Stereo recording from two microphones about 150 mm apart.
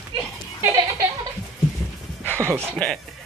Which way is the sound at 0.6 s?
20° right (ahead or behind).